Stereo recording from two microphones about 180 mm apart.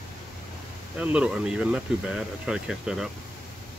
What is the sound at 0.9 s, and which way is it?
Speech, 5° right (ahead or behind).